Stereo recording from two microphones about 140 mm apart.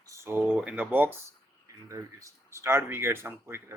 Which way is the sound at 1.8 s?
25° right (ahead or behind).